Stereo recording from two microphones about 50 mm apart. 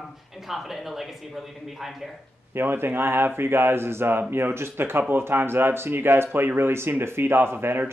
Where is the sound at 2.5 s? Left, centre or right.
Right.